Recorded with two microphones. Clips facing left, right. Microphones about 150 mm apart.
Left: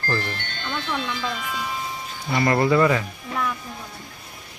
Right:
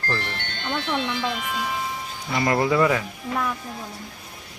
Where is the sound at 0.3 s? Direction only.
65° right (ahead or behind).